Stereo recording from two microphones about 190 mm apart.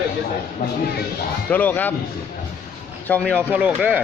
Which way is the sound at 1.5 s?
10° left (ahead or behind).